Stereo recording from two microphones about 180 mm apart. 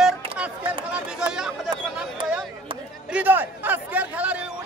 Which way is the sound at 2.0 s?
5° right (ahead or behind).